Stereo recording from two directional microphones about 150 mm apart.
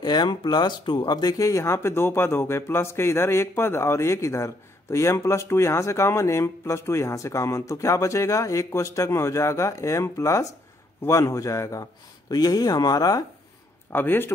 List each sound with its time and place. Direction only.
0.0 s speech: 30° left (ahead or behind)
13.9 s a man's voice: 15° left (ahead or behind)